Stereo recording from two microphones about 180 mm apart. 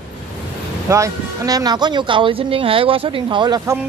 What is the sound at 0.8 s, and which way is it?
Speech, 15° right (ahead or behind).